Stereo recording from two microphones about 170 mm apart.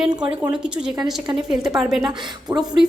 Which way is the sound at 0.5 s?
5° right (ahead or behind).